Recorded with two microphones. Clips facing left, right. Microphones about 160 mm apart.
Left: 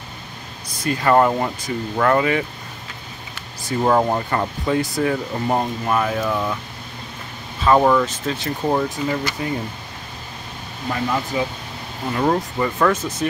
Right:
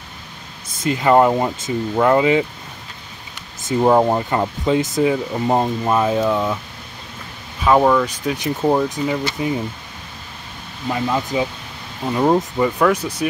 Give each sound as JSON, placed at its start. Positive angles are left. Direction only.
{"t": 0.8, "sound": "speech", "side_deg": -20}
{"t": 7.6, "sound": "speech", "side_deg": -5}
{"t": 8.1, "sound": "speech", "side_deg": -15}
{"t": 10.9, "sound": "speech", "side_deg": -20}